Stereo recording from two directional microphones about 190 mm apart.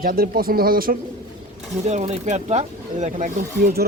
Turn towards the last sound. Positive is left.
turn(degrees=-40)  # may be behind; listen again after turning